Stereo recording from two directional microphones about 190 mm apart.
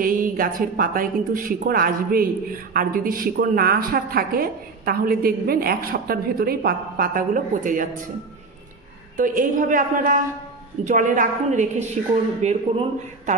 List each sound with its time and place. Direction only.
0.0 s a woman's voice: 45° right (ahead or behind)
9.1 s a woman's voice: 45° right (ahead or behind)